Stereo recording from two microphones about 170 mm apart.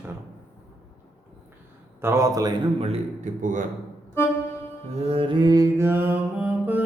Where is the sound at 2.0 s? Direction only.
15° right (ahead or behind).